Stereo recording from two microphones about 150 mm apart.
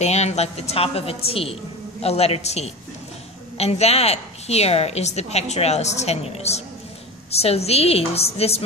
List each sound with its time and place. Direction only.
0.0 s a woman's voice: 50° left (ahead or behind)